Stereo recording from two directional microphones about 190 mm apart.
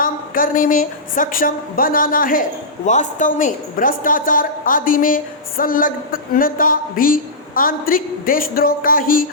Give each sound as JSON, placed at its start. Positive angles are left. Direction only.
{"t": 0.0, "sound": "a woman's voice", "side_deg": 45}